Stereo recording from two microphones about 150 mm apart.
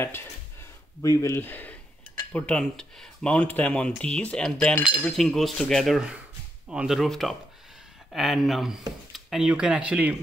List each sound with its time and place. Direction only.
0.0 s speech: 15° left (ahead or behind); by 10.1 s 10° right (ahead or behind)